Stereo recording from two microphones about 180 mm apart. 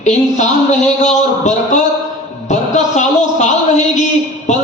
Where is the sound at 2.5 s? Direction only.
40° left (ahead or behind).